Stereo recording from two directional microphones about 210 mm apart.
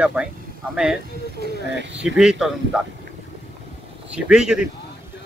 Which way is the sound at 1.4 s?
50° right (ahead or behind).